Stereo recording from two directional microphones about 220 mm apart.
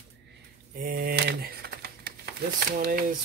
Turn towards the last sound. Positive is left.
turn(degrees=-45)  # may be behind; listen again after turning